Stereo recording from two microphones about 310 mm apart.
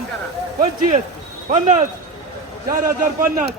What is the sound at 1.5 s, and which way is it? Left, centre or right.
Speech, right.